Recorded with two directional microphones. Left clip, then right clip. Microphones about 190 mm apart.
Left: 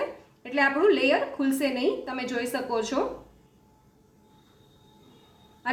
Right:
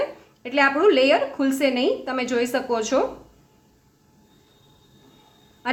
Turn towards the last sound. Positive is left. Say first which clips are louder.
# right 4 dB
turn(degrees=-20)  # may be behind; listen again after turning